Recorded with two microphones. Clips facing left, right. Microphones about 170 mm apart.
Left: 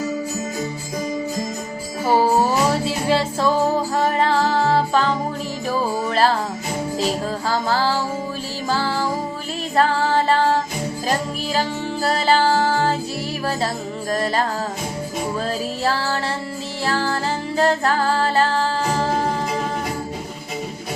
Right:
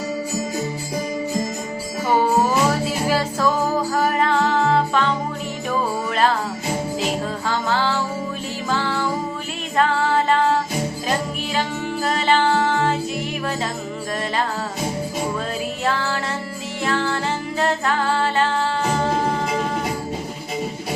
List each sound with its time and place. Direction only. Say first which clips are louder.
2.0 s music: left 1 dB; 30° left (ahead or behind)
7.0 s jingle bell: left 1 dB; 35° left (ahead or behind)
8.7 s music: left 1 dB; 35° left (ahead or behind)
12.0 s music: left 1 dB; 35° left (ahead or behind)
14.1 s music: left 4 dB; 35° left (ahead or behind)
15.8 s music: left 1 dB; 35° left (ahead or behind)